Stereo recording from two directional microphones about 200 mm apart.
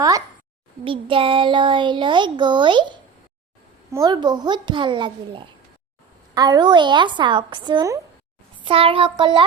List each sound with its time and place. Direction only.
0.9 s speech: 25° right (ahead or behind)
3.9 s speech: 20° right (ahead or behind)